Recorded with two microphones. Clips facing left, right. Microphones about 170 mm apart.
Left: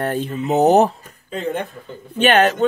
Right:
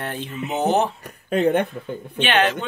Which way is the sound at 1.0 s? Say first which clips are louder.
Right 6 dB; 65° right (ahead or behind).